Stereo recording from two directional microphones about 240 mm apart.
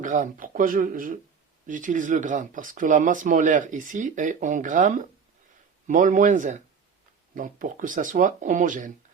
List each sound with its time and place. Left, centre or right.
0.0 s speech: right